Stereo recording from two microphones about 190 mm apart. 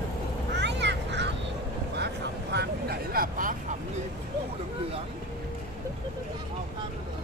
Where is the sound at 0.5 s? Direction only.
65° right (ahead or behind).